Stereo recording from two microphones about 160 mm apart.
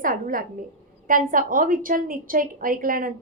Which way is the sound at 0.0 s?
60° right (ahead or behind).